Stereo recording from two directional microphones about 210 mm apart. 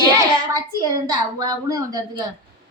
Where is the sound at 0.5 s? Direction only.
15° right (ahead or behind).